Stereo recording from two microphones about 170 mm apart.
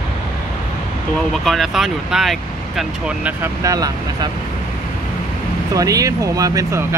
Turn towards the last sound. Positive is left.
turn(degrees=-20)  # may be behind; listen again after turning